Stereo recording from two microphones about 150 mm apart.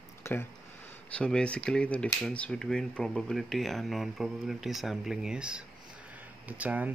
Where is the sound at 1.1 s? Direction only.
5° left (ahead or behind).